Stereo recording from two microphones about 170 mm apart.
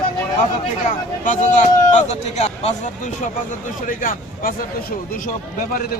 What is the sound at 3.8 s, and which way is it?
A man's voice, 55° left (ahead or behind).